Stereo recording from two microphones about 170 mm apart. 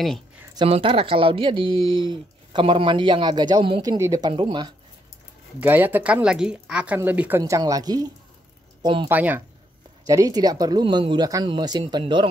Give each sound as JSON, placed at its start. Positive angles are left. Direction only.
{"t": 0.6, "sound": "speech", "side_deg": -30}
{"t": 5.6, "sound": "speech", "side_deg": -10}
{"t": 9.1, "sound": "speech", "side_deg": -10}
{"t": 10.0, "sound": "speech", "side_deg": -20}